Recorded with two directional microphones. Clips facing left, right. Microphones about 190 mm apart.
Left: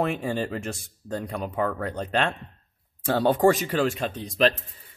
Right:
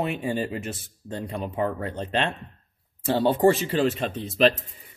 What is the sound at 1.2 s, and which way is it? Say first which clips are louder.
Speech: even; 25° right (ahead or behind).